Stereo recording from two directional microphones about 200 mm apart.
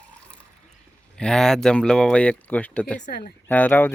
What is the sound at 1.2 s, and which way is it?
Speech, 5° left (ahead or behind).